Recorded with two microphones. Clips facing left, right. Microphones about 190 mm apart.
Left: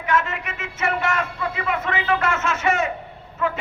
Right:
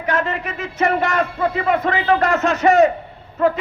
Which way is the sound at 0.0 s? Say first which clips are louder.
Right 2 dB; 35° right (ahead or behind).